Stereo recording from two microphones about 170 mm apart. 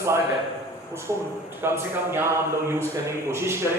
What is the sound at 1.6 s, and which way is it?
A man's voice, 15° right (ahead or behind).